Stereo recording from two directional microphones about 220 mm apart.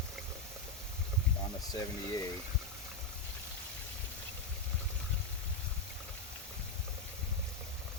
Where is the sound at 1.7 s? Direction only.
15° left (ahead or behind).